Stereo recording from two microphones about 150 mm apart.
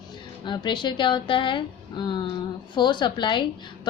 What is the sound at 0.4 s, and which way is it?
Speech, 30° left (ahead or behind).